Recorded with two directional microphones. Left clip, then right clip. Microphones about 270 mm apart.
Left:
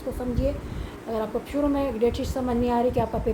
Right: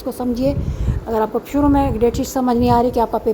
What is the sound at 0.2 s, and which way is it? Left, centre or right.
Speech, right.